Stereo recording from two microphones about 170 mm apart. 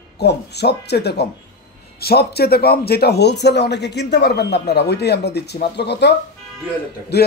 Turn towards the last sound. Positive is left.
turn(degrees=75)  # may be behind; listen again after turning